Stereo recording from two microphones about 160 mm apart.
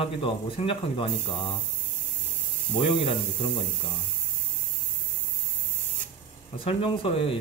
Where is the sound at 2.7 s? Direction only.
35° left (ahead or behind).